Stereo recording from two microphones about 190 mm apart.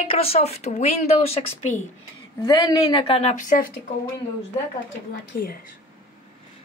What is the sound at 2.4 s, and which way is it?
Speech, 20° left (ahead or behind).